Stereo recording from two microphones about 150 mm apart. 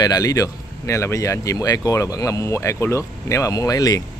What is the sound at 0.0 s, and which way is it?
Speech, 25° left (ahead or behind).